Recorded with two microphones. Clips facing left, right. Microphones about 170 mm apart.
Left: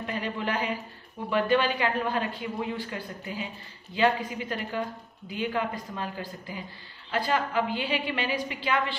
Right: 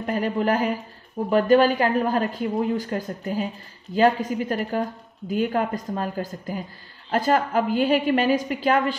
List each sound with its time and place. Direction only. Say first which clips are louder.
0.0 s a woman's voice: right 8 dB; 45° right (ahead or behind)